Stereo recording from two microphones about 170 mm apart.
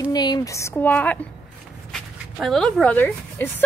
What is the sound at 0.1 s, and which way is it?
Speech, 25° left (ahead or behind).